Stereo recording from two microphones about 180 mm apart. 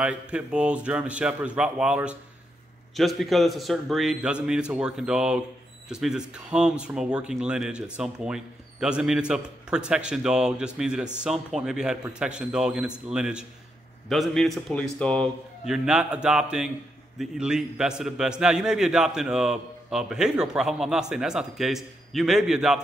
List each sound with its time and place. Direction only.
0.0 s a man's voice: 5° right (ahead or behind)